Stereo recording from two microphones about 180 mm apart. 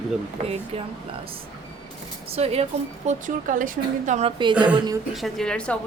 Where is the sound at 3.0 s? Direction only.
45° right (ahead or behind).